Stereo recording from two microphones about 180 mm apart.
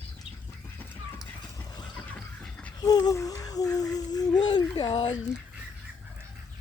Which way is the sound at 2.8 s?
20° left (ahead or behind).